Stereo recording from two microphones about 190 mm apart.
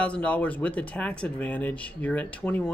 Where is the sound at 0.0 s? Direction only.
5° left (ahead or behind).